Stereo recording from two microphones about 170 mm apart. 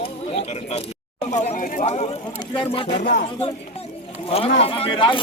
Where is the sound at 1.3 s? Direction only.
45° left (ahead or behind).